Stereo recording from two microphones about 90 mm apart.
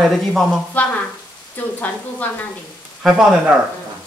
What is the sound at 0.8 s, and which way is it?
Speech, 15° left (ahead or behind).